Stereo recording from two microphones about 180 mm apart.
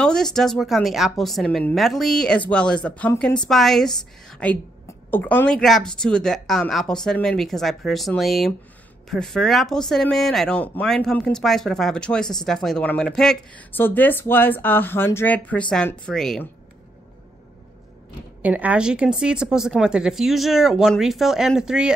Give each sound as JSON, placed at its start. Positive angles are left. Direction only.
{"t": 0.0, "sound": "speech", "side_deg": 5}
{"t": 18.4, "sound": "speech", "side_deg": -10}